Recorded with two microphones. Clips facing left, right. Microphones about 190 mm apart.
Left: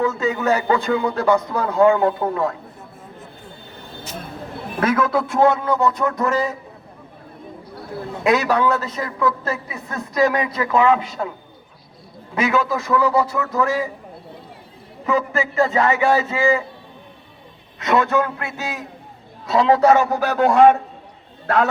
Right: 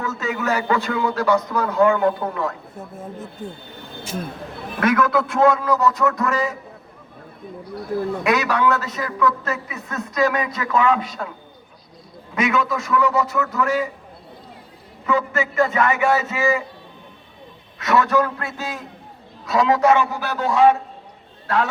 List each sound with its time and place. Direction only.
0.3 s a man's voice: 30° left (ahead or behind)
4.8 s a man's voice: 25° left (ahead or behind)
8.2 s a man's voice: 30° left (ahead or behind)
12.3 s a man's voice: 30° left (ahead or behind)
15.0 s a man's voice: 30° left (ahead or behind)
17.7 s a man's voice: 25° left (ahead or behind)
19.5 s a man's voice: 30° left (ahead or behind); by 21.7 s 55° left (ahead or behind)